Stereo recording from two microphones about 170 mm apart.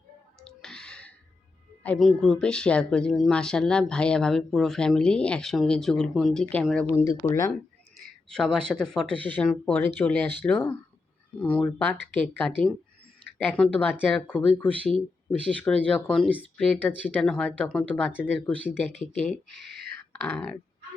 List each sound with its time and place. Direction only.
0.4 s a sound: 5° left (ahead or behind)
1.8 s speech: 5° left (ahead or behind)
6.9 s speech: 15° left (ahead or behind)
8.3 s speech: 5° left (ahead or behind)
19.5 s speech: 75° right (ahead or behind)
20.1 s speech: 5° left (ahead or behind)